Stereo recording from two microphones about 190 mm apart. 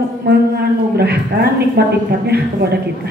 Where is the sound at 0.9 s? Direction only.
60° right (ahead or behind).